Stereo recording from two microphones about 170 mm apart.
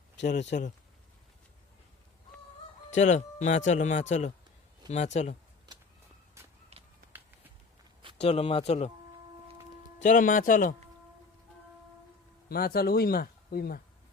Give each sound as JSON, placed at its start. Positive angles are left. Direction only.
{"t": 0.5, "sound": "speech", "side_deg": 55}
{"t": 2.9, "sound": "speech", "side_deg": 45}
{"t": 5.7, "sound": "a sound", "side_deg": -25}
{"t": 8.2, "sound": "speech", "side_deg": 35}
{"t": 10.0, "sound": "speech", "side_deg": 50}
{"t": 12.5, "sound": "speech", "side_deg": 60}